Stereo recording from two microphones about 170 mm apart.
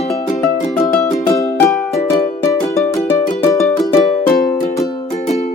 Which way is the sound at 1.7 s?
Centre (ahead or behind).